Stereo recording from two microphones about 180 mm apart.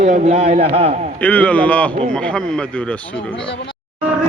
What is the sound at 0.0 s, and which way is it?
Speech, 35° right (ahead or behind).